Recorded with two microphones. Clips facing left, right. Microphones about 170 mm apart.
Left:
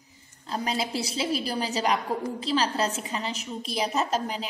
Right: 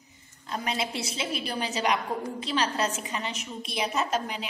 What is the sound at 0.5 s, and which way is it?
A woman's voice, 30° left (ahead or behind).